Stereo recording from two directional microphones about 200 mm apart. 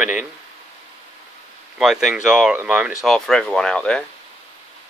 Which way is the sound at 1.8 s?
Centre (ahead or behind).